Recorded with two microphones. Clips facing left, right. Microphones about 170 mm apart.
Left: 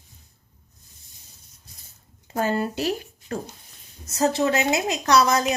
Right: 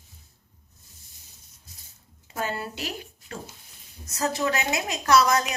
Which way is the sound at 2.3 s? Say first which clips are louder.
Left 7 dB; 45° left (ahead or behind).